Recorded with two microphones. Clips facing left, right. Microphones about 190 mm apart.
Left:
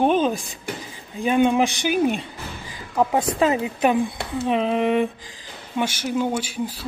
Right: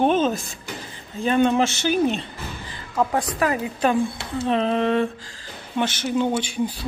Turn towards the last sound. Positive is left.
turn(degrees=5)  # may be behind; listen again after turning